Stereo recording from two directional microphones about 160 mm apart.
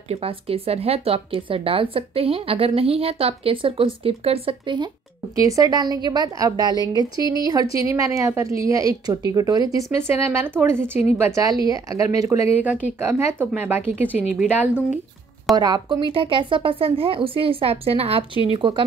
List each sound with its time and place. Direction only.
0.1 s a woman's voice: 35° right (ahead or behind); by 15.0 s 10° right (ahead or behind)
15.5 s speech: 25° right (ahead or behind)